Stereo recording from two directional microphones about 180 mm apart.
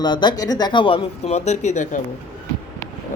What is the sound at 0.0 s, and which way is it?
Speech, 25° left (ahead or behind).